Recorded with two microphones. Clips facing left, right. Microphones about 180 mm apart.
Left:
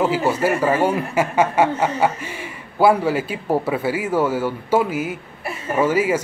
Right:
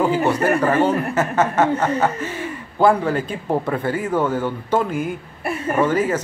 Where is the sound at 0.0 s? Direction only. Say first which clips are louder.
Right 1 dB; 5° left (ahead or behind).